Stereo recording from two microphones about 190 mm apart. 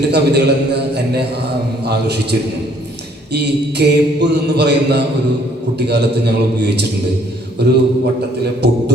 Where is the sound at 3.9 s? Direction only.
60° right (ahead or behind).